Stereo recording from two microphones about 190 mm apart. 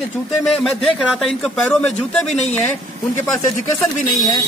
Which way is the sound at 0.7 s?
Centre (ahead or behind).